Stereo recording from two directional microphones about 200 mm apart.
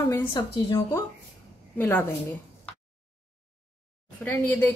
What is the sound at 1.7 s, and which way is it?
Speech, 10° left (ahead or behind).